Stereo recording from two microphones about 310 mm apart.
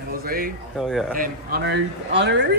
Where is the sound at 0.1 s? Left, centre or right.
Right.